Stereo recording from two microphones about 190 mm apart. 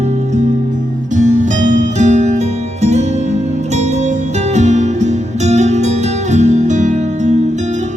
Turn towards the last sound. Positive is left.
turn(degrees=-40)  # may be behind; listen again after turning